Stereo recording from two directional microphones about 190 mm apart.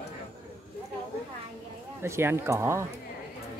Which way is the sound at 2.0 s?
15° right (ahead or behind).